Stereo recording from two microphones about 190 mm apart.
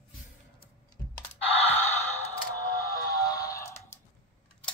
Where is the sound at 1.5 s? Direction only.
35° left (ahead or behind).